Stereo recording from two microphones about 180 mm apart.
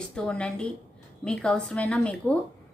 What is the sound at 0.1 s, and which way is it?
A woman's voice, 5° left (ahead or behind).